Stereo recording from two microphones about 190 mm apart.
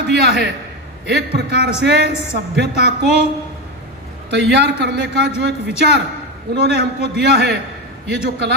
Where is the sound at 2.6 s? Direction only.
60° right (ahead or behind).